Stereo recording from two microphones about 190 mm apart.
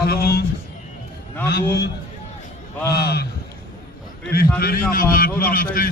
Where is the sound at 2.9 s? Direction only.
60° left (ahead or behind).